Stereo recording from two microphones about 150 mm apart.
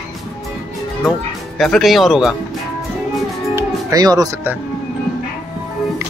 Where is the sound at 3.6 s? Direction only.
25° right (ahead or behind).